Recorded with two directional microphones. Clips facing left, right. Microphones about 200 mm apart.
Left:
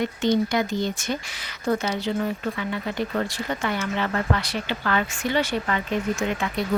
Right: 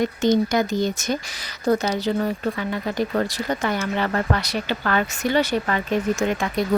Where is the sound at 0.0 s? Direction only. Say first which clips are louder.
Right 3 dB; 40° right (ahead or behind).